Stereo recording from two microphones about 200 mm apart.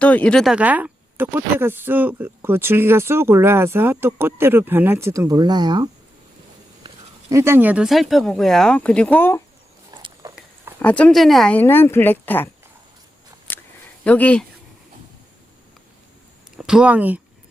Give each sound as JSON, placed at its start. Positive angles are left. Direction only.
{"t": 0.0, "sound": "speech", "side_deg": 5}
{"t": 9.9, "sound": "biting", "side_deg": -25}
{"t": 10.8, "sound": "speech", "side_deg": 5}
{"t": 14.0, "sound": "speech", "side_deg": 5}
{"t": 16.6, "sound": "speech", "side_deg": -5}